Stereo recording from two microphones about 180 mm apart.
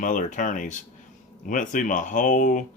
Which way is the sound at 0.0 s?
45° left (ahead or behind).